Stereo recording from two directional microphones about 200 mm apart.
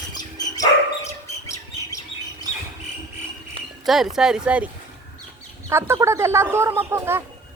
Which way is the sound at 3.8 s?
Centre (ahead or behind).